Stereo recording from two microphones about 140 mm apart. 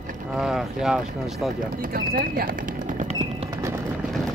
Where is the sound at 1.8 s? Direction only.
90° right; by 3.5 s 50° right (ahead or behind).